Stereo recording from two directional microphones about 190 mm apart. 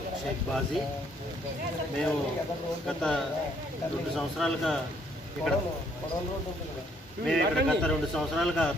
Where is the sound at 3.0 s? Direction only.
5° left (ahead or behind).